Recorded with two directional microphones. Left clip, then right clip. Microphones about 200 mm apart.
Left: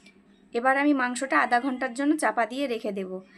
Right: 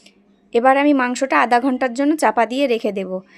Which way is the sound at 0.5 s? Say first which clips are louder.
Right 9 dB; 40° right (ahead or behind).